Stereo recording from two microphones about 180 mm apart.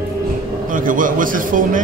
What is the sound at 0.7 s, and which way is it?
A man's voice, 50° right (ahead or behind).